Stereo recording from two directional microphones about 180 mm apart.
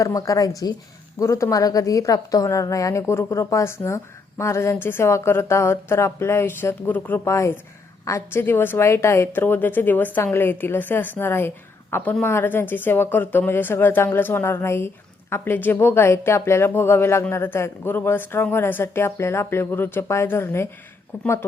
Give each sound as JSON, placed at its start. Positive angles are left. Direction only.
{"t": 0.0, "sound": "a woman's voice", "side_deg": 20}